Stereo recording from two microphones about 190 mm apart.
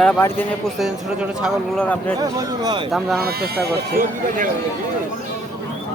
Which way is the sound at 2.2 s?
20° right (ahead or behind).